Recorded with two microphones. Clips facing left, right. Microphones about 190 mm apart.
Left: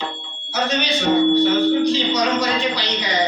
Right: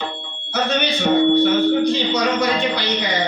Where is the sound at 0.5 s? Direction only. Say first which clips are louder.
Right 1 dB; 55° right (ahead or behind).